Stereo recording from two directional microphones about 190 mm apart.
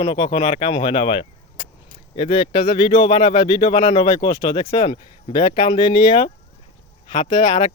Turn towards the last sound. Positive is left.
turn(degrees=25)  # may be behind; listen again after turning